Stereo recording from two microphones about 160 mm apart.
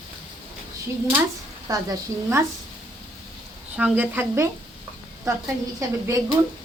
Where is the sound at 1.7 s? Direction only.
20° right (ahead or behind).